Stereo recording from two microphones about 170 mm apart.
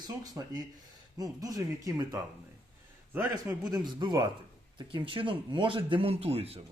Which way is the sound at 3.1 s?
10° right (ahead or behind).